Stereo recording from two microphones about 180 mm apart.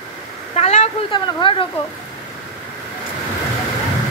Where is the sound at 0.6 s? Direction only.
35° left (ahead or behind).